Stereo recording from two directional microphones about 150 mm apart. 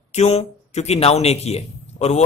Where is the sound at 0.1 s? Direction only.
45° left (ahead or behind).